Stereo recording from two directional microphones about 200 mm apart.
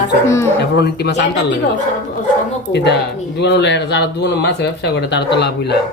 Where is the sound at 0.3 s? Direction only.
15° left (ahead or behind).